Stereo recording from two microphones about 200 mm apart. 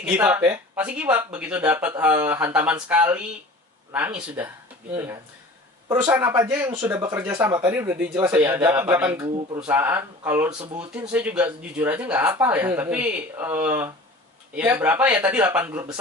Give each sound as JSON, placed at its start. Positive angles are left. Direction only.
{"t": 0.0, "sound": "speech", "side_deg": -5}